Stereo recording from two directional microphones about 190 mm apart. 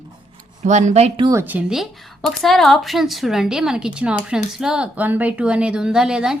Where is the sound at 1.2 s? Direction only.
15° right (ahead or behind).